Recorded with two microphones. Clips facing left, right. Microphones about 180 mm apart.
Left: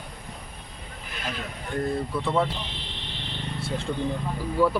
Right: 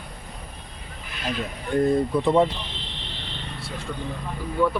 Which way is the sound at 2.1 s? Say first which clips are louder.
Right 5 dB; 20° right (ahead or behind).